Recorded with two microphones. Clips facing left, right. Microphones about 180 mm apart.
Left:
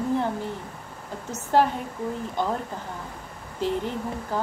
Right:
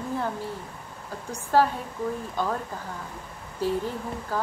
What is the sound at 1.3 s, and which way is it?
Speech, 20° left (ahead or behind).